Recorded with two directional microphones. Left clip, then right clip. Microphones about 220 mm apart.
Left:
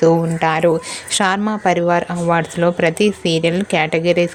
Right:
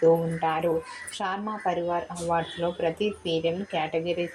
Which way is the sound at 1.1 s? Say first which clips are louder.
Left 13 dB; 50° left (ahead or behind).